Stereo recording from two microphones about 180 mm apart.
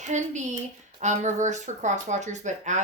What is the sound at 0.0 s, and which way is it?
Speech, 40° right (ahead or behind).